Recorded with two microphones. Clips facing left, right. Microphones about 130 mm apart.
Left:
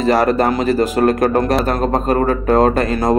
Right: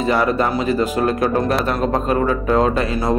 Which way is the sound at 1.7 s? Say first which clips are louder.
Left 2 dB; 40° left (ahead or behind).